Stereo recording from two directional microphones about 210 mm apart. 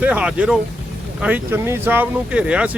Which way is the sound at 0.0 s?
5° right (ahead or behind).